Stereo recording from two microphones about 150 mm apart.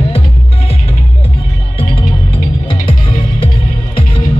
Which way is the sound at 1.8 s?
35° left (ahead or behind).